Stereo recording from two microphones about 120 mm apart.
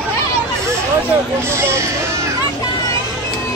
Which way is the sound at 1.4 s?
20° right (ahead or behind).